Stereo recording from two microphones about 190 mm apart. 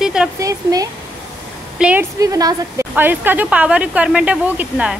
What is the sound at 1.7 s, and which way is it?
A woman's voice, 5° right (ahead or behind).